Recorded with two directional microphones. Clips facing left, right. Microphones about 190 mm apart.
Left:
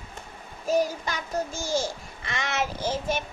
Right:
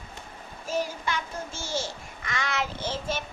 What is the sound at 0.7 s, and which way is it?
Child singing, 40° left (ahead or behind).